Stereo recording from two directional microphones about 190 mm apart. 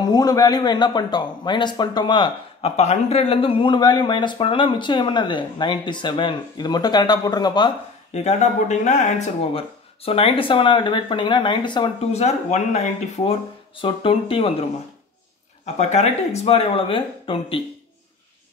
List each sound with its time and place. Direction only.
0.0 s speech: 20° left (ahead or behind)
8.1 s speech: 35° left (ahead or behind)
15.6 s speech: 35° left (ahead or behind)